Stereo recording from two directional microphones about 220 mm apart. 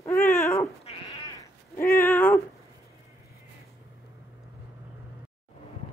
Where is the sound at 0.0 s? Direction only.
10° left (ahead or behind).